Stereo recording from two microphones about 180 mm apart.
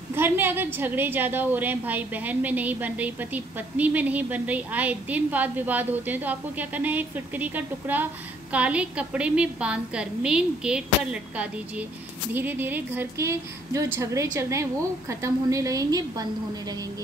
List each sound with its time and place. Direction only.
0.1 s a woman's voice: 10° right (ahead or behind)
12.4 s a woman's voice: 10° right (ahead or behind)